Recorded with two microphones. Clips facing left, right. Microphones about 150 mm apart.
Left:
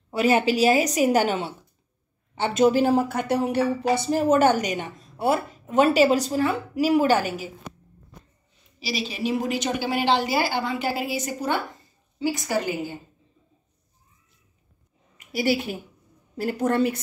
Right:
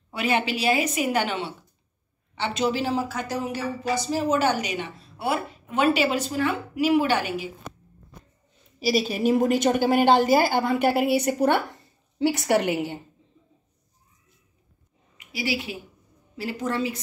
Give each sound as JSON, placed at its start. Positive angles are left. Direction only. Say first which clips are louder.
{"t": 0.1, "sound": "a woman's voice", "louder": "left 5 dB", "side_deg": 40}
{"t": 4.0, "sound": "a woman's voice", "louder": "left 4 dB", "side_deg": 50}
{"t": 8.7, "sound": "a woman's voice", "louder": "right 6 dB", "side_deg": -50}
{"t": 15.3, "sound": "a woman's voice", "louder": "left 5 dB", "side_deg": 50}